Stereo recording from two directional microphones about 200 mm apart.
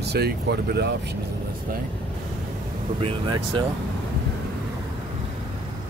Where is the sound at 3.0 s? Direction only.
25° right (ahead or behind).